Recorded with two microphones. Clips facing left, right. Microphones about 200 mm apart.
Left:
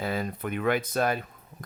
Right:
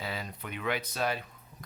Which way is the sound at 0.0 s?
50° left (ahead or behind).